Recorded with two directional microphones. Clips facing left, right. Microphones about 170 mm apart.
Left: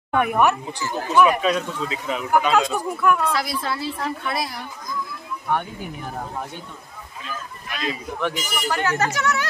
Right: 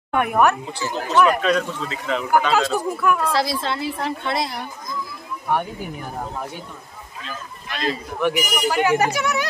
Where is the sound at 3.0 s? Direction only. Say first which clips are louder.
Left 2 dB; centre (ahead or behind).